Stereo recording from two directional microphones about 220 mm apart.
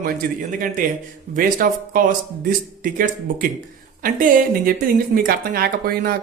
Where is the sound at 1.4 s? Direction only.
40° right (ahead or behind).